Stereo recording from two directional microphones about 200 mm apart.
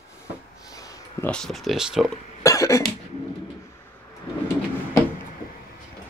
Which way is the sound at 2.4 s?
15° left (ahead or behind).